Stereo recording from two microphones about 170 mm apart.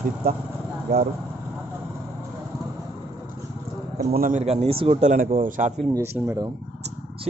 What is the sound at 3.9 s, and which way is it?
Speech, 55° right (ahead or behind).